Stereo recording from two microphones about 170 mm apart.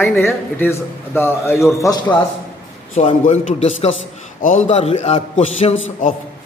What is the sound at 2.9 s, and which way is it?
A man's voice, 40° left (ahead or behind).